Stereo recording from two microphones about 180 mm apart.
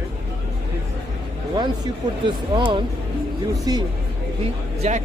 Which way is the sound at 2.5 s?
30° right (ahead or behind).